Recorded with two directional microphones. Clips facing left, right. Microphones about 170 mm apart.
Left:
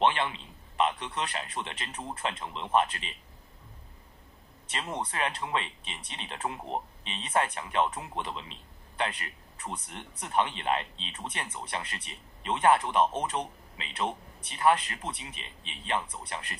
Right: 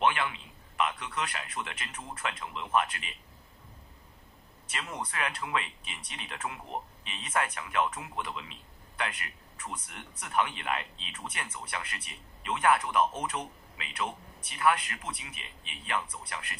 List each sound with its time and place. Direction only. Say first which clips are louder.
0.0 s speech: left 2 dB; 25° left (ahead or behind)
4.6 s speech: left 3 dB; 30° left (ahead or behind)